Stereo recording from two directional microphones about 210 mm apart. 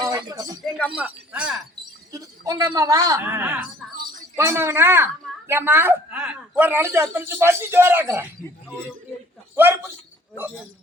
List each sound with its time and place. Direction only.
0.0 s a sound: 20° right (ahead or behind)
0.9 s a woman's voice: 5° right (ahead or behind)
9.6 s a woman's voice: 10° right (ahead or behind)